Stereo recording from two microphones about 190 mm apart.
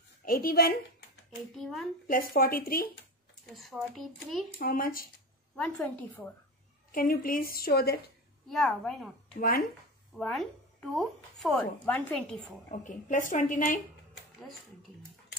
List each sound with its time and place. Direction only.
0.2 s a woman's voice: 50° left (ahead or behind)
1.5 s speech: centre (ahead or behind)
2.0 s a woman's voice: 50° left (ahead or behind)
3.5 s speech: centre (ahead or behind)
4.6 s a woman's voice: 50° left (ahead or behind)
5.6 s a woman's voice: 10° left (ahead or behind)
6.9 s a woman's voice: 50° left (ahead or behind)
8.5 s speech: centre (ahead or behind)
9.4 s a woman's voice: 55° left (ahead or behind)
10.1 s speech: centre (ahead or behind)
12.8 s a woman's voice: 45° left (ahead or behind)